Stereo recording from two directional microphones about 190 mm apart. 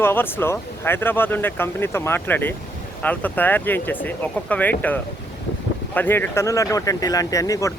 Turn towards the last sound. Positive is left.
turn(degrees=15)  # may be behind; listen again after turning